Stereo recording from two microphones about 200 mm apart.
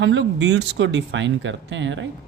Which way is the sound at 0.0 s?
65° right (ahead or behind).